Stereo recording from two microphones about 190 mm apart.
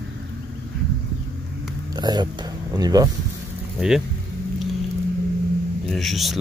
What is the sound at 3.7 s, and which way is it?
Speech, 5° right (ahead or behind).